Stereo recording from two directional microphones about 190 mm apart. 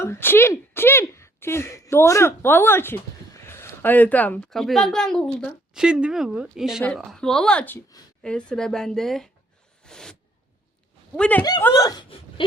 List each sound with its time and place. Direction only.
0.0 s speech: 15° left (ahead or behind)
9.8 s zipper: 5° left (ahead or behind)
11.2 s speech: 10° left (ahead or behind)
11.7 s speech: 20° left (ahead or behind)